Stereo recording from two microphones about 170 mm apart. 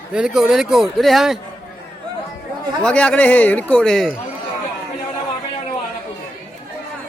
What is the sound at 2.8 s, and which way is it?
A man's voice, 5° left (ahead or behind).